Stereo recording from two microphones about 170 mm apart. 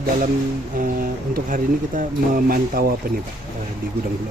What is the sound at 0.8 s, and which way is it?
Speech, 55° right (ahead or behind).